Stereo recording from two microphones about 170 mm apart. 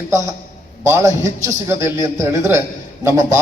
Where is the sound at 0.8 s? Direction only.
20° right (ahead or behind).